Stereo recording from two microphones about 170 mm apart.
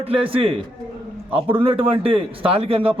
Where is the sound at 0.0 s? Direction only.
35° right (ahead or behind).